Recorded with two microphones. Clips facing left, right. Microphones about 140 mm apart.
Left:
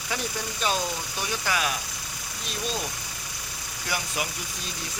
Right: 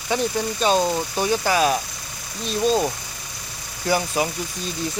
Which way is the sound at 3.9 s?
35° right (ahead or behind).